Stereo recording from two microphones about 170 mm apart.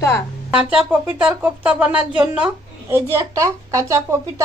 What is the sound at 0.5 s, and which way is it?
A woman's voice, 10° right (ahead or behind).